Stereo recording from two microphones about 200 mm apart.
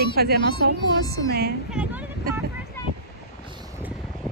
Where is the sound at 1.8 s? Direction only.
5° right (ahead or behind).